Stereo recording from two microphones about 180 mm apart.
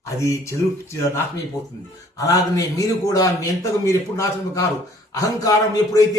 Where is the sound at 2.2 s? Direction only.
20° left (ahead or behind).